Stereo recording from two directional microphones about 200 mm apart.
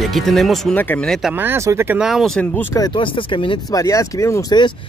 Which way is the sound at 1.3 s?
10° right (ahead or behind).